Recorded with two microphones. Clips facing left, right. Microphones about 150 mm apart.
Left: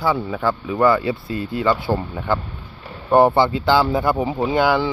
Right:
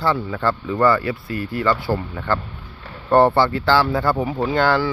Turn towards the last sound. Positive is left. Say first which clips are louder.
# left 1 dB
turn(degrees=15)  # may be behind; listen again after turning